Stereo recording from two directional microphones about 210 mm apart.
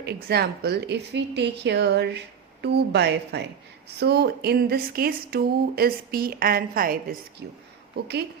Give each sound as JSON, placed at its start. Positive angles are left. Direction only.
{"t": 0.0, "sound": "a woman's voice", "side_deg": -50}